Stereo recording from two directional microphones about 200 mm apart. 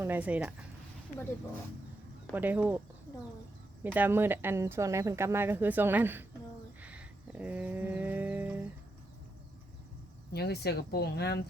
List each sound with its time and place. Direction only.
0.0 s speech: 10° right (ahead or behind)
2.3 s speech: 10° right (ahead or behind)
3.9 s speech: 10° right (ahead or behind)
6.8 s livestock: 5° right (ahead or behind)
10.3 s speech: 55° left (ahead or behind)